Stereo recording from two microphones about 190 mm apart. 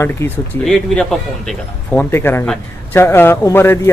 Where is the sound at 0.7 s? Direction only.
5° left (ahead or behind).